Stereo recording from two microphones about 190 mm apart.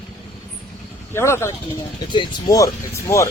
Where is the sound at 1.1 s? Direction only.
15° left (ahead or behind).